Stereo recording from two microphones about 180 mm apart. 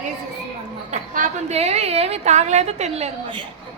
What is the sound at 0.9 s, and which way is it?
A woman's voice, 40° right (ahead or behind).